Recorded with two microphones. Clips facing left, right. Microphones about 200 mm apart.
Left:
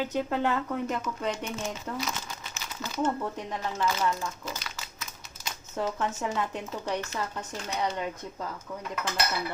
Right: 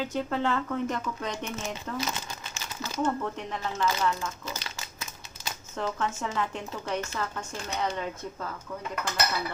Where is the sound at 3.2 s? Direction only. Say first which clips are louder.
Even; 15° left (ahead or behind).